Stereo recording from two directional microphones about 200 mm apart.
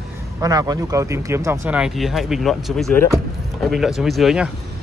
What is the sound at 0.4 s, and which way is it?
Speech, 20° right (ahead or behind).